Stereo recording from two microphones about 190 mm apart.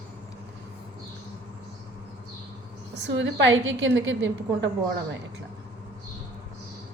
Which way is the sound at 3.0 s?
75° right (ahead or behind).